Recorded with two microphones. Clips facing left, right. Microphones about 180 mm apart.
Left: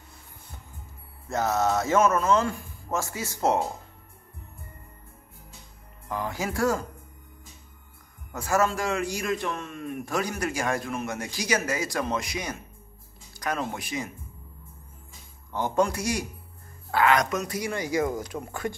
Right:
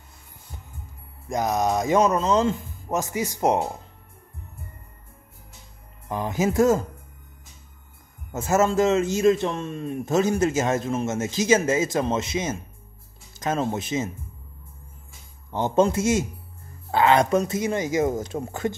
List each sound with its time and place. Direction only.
1.3 s speech: 15° right (ahead or behind)
6.0 s a man's voice: 20° right (ahead or behind)
8.3 s a man's voice: 25° right (ahead or behind)
15.5 s a man's voice: 20° right (ahead or behind)